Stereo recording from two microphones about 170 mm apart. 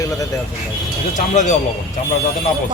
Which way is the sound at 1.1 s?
45° left (ahead or behind).